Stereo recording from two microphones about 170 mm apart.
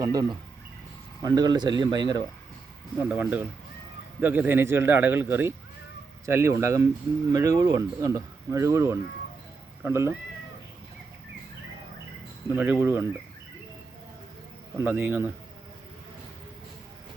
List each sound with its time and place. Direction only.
0.0 s speech: 20° right (ahead or behind)
3.0 s a man's voice: 10° right (ahead or behind)
12.5 s a man's voice: 10° right (ahead or behind)
14.8 s a man's voice: 10° right (ahead or behind)